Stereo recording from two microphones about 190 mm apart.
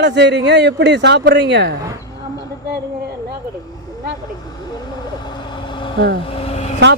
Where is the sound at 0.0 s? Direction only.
65° right (ahead or behind).